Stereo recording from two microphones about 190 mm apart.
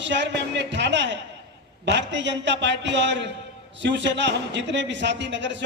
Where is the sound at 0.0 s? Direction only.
70° right (ahead or behind).